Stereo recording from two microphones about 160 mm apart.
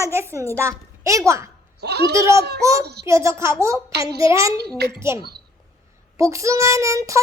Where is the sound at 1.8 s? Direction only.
90° right.